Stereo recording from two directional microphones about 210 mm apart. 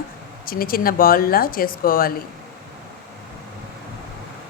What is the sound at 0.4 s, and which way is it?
A woman's voice, 45° left (ahead or behind).